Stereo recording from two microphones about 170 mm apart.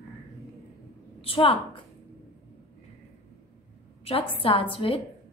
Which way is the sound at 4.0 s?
35° left (ahead or behind).